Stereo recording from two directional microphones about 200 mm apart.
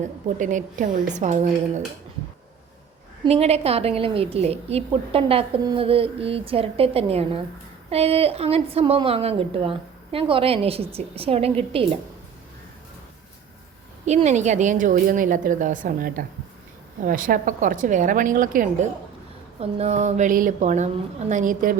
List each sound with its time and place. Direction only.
0.3 s a woman's voice: 40° right (ahead or behind)
3.2 s a woman's voice: 30° right (ahead or behind)
14.0 s a woman's voice: 35° right (ahead or behind)